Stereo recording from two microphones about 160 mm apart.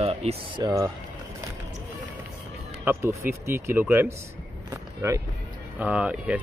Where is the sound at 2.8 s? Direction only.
15° right (ahead or behind).